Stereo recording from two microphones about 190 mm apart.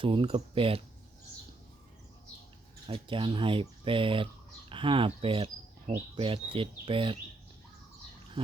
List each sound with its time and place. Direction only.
0.0 s speech: 30° right (ahead or behind)
2.8 s speech: 25° right (ahead or behind)